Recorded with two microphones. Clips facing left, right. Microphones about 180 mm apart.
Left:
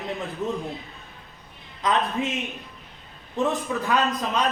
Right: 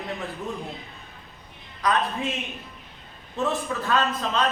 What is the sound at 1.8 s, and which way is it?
A man's voice, 20° left (ahead or behind).